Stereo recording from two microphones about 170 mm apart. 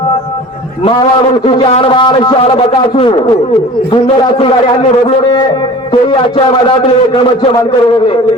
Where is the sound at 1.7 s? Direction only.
30° left (ahead or behind).